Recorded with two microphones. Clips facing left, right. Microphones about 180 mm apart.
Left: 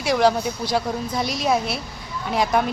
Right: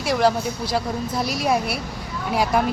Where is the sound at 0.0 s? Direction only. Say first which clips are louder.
Left 1 dB; centre (ahead or behind).